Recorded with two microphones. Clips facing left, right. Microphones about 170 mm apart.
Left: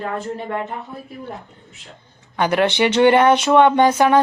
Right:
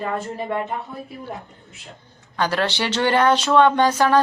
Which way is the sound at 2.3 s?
15° left (ahead or behind).